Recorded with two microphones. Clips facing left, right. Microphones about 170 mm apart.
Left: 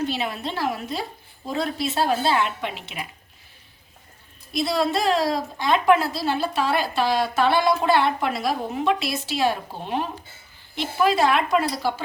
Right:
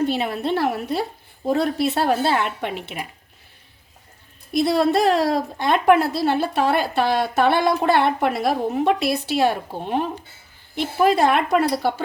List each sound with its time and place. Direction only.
0.0 s a woman's voice: 50° right (ahead or behind)
4.5 s a woman's voice: 55° right (ahead or behind)